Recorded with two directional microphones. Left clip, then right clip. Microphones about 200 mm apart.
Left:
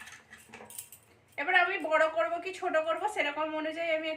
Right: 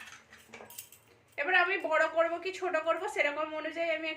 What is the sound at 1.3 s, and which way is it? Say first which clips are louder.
A woman's voice: left 1 dB; 15° right (ahead or behind).